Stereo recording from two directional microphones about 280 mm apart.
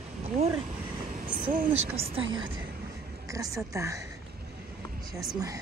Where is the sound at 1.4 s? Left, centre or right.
Right.